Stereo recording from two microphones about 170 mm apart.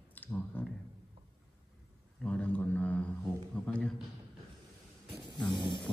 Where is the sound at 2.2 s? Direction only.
10° left (ahead or behind).